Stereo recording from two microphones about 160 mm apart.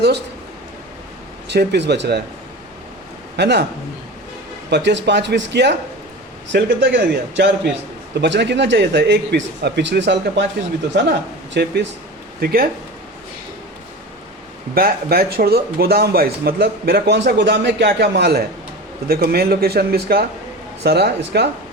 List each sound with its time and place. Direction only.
1.5 s speech: 90° right
3.3 s speech: 90° right
4.7 s speech: 90° right
11.5 s speech: 90° right
12.4 s speech: 70° right (ahead or behind)
14.8 s speech: 70° right (ahead or behind)
19.0 s speech: 70° right (ahead or behind)
20.8 s speech: 90° right